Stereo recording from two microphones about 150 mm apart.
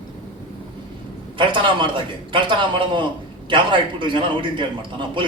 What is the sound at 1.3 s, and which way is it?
A man's voice, 30° right (ahead or behind).